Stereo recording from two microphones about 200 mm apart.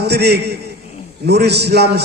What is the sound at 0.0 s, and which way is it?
A man's voice, 55° right (ahead or behind).